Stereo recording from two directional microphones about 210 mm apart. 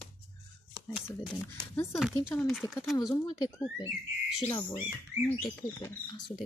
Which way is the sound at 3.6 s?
5° right (ahead or behind).